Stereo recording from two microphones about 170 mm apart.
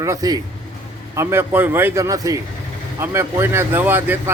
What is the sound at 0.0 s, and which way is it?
Speech, 20° right (ahead or behind).